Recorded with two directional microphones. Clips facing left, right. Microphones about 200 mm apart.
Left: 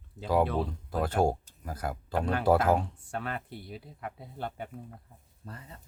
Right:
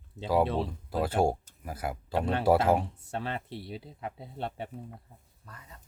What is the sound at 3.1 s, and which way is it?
Speech, 25° right (ahead or behind).